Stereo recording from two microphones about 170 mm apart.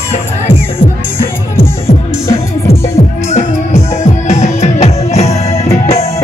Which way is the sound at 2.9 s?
35° left (ahead or behind).